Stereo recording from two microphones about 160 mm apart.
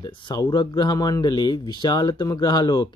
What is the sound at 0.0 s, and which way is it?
Speech, 30° left (ahead or behind).